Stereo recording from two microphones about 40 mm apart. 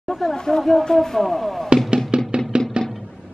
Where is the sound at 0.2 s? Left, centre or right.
Centre.